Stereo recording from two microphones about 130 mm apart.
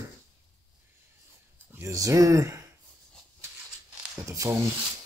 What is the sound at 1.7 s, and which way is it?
Speech, 25° right (ahead or behind).